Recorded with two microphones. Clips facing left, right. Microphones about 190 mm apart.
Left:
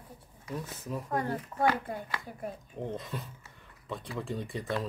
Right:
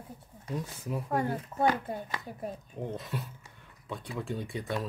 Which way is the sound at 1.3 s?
25° right (ahead or behind).